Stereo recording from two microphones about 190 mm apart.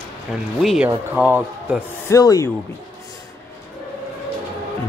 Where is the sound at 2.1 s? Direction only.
20° left (ahead or behind).